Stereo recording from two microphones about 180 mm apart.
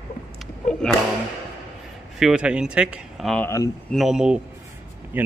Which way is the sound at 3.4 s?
15° left (ahead or behind).